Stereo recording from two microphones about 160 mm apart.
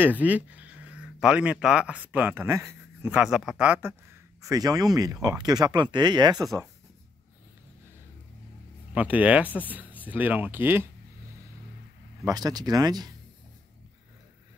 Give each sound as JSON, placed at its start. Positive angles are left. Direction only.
{"t": 0.0, "sound": "speech", "side_deg": -10}
{"t": 4.4, "sound": "speech", "side_deg": -20}
{"t": 8.9, "sound": "speech", "side_deg": -10}
{"t": 12.3, "sound": "speech", "side_deg": -25}